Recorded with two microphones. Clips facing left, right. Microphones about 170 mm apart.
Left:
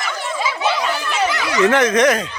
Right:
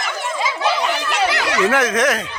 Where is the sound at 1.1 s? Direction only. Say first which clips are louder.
Right 1 dB; 75° right (ahead or behind).